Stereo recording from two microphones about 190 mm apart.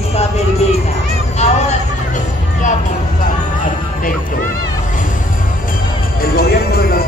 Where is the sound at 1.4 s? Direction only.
35° left (ahead or behind).